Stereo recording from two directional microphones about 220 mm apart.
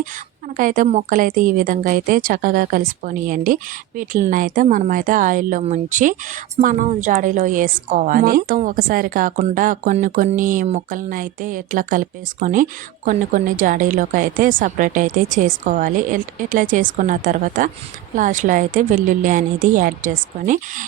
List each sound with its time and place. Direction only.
0.0 s a woman's voice: 35° right (ahead or behind)